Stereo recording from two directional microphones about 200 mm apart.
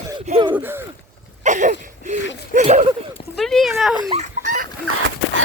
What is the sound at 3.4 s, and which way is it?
Speech, centre (ahead or behind).